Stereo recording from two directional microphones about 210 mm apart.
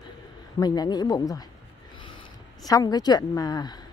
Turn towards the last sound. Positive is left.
turn(degrees=20)  # may be behind; listen again after turning